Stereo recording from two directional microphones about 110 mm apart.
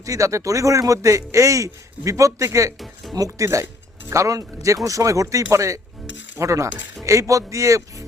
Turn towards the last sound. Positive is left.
turn(degrees=-30)  # may be behind; listen again after turning